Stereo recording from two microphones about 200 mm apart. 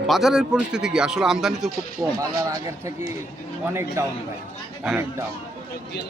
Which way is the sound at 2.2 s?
15° right (ahead or behind).